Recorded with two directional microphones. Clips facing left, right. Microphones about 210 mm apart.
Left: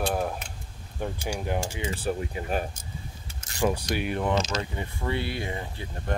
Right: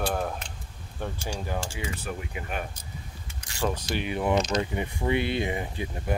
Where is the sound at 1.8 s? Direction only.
30° left (ahead or behind).